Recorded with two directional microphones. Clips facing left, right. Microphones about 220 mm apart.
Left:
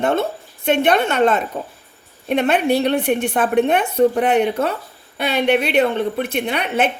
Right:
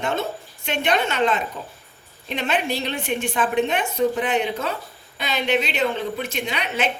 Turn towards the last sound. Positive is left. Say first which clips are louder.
# left 6 dB
turn(degrees=55)  # may be behind; listen again after turning